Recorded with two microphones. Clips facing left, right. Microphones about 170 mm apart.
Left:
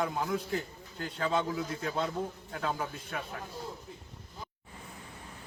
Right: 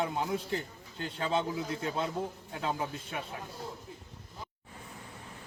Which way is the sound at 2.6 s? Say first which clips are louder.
Right 1 dB; 20° right (ahead or behind).